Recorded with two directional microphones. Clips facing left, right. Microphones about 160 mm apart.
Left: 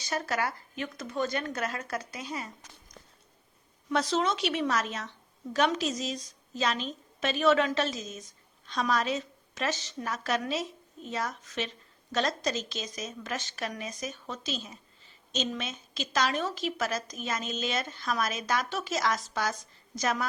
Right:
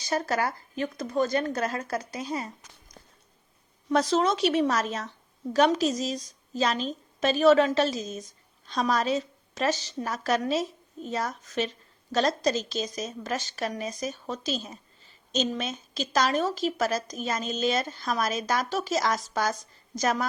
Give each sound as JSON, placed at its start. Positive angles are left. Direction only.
{"t": 0.0, "sound": "a woman's voice", "side_deg": -40}
{"t": 3.8, "sound": "a woman's voice", "side_deg": -40}